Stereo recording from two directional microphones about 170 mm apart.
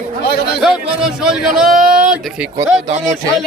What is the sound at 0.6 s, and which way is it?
Speech, 5° right (ahead or behind).